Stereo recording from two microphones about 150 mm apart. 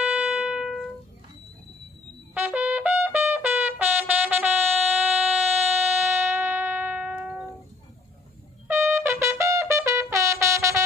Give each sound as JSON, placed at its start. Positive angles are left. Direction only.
{"t": 0.0, "sound": "music", "side_deg": -5}
{"t": 2.3, "sound": "trumpet", "side_deg": -10}
{"t": 5.9, "sound": "music", "side_deg": -15}
{"t": 8.6, "sound": "trumpet", "side_deg": -15}